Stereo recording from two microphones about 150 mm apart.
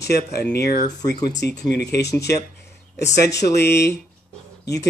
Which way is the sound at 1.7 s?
90° left.